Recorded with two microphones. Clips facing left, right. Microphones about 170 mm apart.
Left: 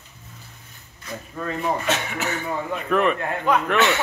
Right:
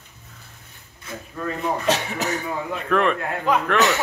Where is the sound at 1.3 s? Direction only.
Centre (ahead or behind).